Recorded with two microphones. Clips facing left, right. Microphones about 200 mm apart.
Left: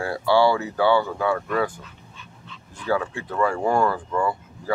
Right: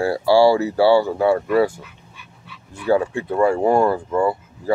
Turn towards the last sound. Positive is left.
turn(degrees=-25)  # may be behind; listen again after turning